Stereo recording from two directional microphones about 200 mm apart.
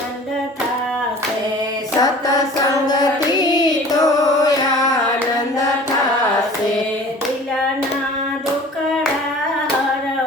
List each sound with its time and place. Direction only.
2.0 s hands: 20° left (ahead or behind)
3.2 s carnatic music: 20° left (ahead or behind)